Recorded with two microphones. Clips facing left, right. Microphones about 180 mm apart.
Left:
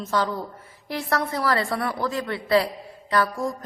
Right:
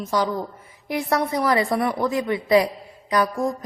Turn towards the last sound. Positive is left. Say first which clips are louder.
# right 2 dB
turn(degrees=-15)  # may be behind; listen again after turning